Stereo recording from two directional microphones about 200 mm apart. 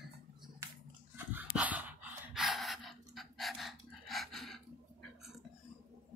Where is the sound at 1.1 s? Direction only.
10° right (ahead or behind).